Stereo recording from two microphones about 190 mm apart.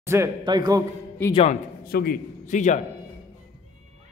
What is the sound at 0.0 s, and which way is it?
Speech, 15° right (ahead or behind).